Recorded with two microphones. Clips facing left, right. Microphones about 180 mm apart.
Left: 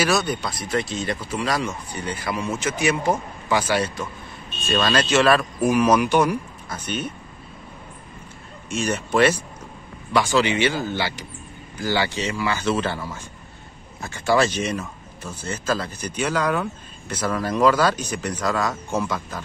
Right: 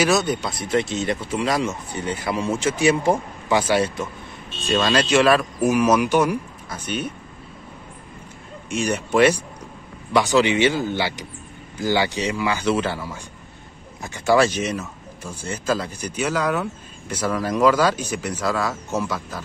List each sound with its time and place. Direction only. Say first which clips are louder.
0.0 s speech: right 2 dB; 25° right (ahead or behind)
4.6 s speech: right 1 dB; 10° right (ahead or behind)
8.6 s speech: right 1 dB; 15° right (ahead or behind)